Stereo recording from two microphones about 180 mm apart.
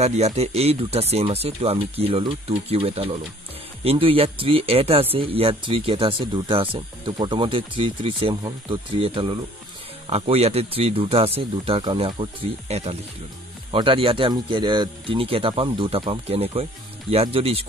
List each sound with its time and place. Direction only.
0.0 s speech: 35° right (ahead or behind)